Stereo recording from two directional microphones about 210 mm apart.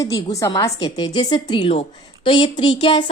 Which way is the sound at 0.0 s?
15° left (ahead or behind).